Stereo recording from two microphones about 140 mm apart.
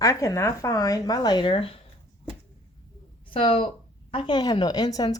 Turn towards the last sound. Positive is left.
turn(degrees=30)  # may be behind; listen again after turning